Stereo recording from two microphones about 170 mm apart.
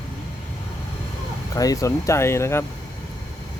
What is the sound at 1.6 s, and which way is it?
Speech, 20° left (ahead or behind).